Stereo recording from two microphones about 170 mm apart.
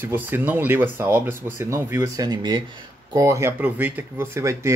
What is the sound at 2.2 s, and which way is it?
Speech, 25° right (ahead or behind).